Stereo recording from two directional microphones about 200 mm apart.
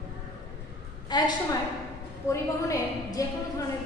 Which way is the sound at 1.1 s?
20° left (ahead or behind).